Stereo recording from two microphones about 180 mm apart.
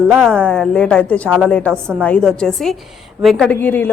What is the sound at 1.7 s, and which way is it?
Speech, 10° right (ahead or behind).